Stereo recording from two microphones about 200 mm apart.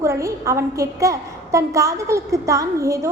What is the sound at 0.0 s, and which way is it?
A woman's voice, 15° right (ahead or behind).